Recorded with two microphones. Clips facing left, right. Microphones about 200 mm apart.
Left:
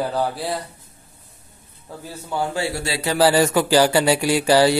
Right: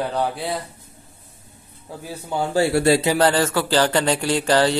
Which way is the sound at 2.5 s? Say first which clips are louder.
Right 8 dB; 50° right (ahead or behind).